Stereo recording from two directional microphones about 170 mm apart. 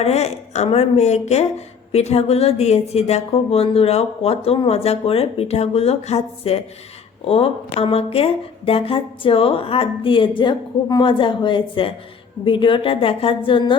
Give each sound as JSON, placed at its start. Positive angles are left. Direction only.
{"t": 0.0, "sound": "a woman's voice", "side_deg": 40}